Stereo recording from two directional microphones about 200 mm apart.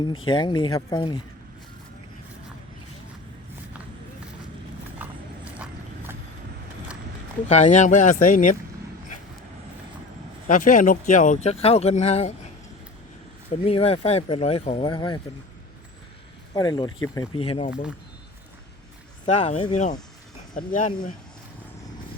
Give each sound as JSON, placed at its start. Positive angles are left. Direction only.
{"t": 0.3, "sound": "speech", "side_deg": 25}
{"t": 5.0, "sound": "horse", "side_deg": -10}
{"t": 7.4, "sound": "speech", "side_deg": 35}
{"t": 10.4, "sound": "speech", "side_deg": 40}
{"t": 13.5, "sound": "speech", "side_deg": 30}
{"t": 16.6, "sound": "speech", "side_deg": 20}
{"t": 19.2, "sound": "speech", "side_deg": 35}